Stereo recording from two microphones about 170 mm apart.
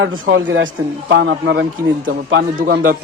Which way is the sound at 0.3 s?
90° right.